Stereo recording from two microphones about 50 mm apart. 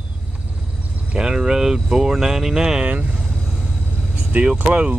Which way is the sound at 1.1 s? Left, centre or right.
Centre.